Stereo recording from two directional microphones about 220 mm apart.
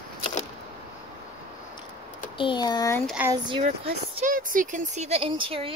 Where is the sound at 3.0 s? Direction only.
5° right (ahead or behind).